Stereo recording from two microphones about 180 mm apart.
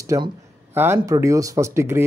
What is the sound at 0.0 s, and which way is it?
Speech, 15° right (ahead or behind).